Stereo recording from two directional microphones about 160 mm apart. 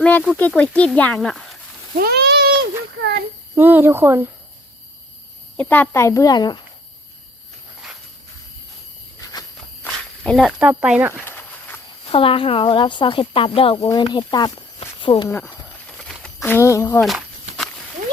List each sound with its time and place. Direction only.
0.0 s a sound: 5° left (ahead or behind)
0.3 s speech: 10° left (ahead or behind)
2.0 s speech: 85° right
3.5 s speech: 10° right (ahead or behind)
5.5 s speech: 10° left (ahead or behind); by 6.6 s 25° left (ahead or behind)
9.8 s walk: 5° left (ahead or behind)
10.4 s speech: 10° right (ahead or behind)
11.1 s a sound: 15° left (ahead or behind)
12.1 s speech: 35° left (ahead or behind)
14.8 s a sound: 30° left (ahead or behind)
15.3 s speech: 15° left (ahead or behind)
16.0 s a sound: 5° left (ahead or behind)
16.6 s speech: 15° left (ahead or behind)
17.0 s walk: centre (ahead or behind)